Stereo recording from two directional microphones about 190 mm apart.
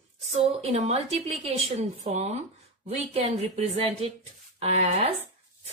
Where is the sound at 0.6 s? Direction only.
35° right (ahead or behind).